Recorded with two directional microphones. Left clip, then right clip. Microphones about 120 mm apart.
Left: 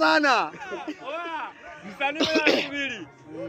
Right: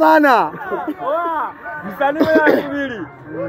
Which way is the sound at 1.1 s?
50° left (ahead or behind).